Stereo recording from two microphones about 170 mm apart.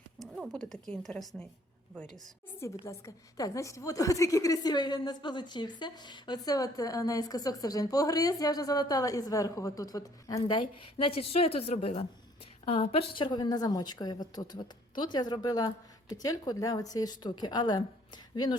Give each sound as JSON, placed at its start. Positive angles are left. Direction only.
{"t": 0.2, "sound": "speech", "side_deg": 5}
{"t": 2.2, "sound": "a woman's voice", "side_deg": 15}